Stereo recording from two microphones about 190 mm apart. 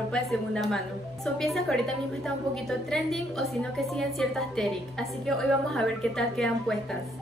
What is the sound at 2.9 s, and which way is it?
A woman's voice, centre (ahead or behind).